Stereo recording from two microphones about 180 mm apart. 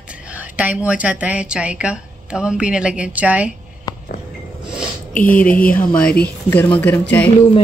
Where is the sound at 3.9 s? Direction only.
20° left (ahead or behind).